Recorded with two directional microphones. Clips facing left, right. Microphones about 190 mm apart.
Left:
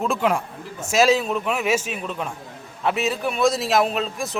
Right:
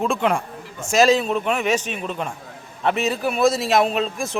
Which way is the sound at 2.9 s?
Centre (ahead or behind).